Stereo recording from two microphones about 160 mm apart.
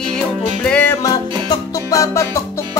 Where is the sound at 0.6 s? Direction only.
10° left (ahead or behind).